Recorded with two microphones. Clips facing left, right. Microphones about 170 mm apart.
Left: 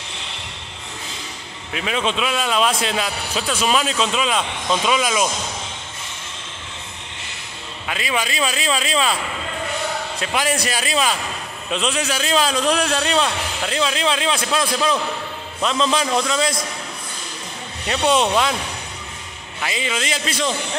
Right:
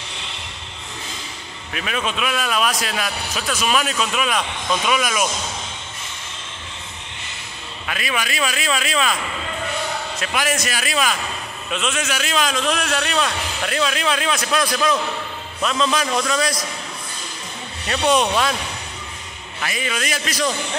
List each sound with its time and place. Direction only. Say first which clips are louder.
1.7 s speech: left 3 dB; 20° left (ahead or behind)
7.8 s speech: left 2 dB; 20° left (ahead or behind)
10.2 s speech: left 2 dB; 25° left (ahead or behind)
17.8 s speech: even; 20° left (ahead or behind)
19.6 s speech: left 1 dB; 20° left (ahead or behind)